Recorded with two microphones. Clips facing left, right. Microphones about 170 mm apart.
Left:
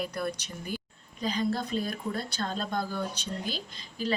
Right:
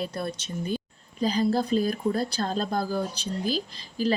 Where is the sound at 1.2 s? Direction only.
35° right (ahead or behind).